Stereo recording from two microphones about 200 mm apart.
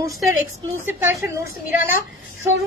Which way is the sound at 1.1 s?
10° right (ahead or behind).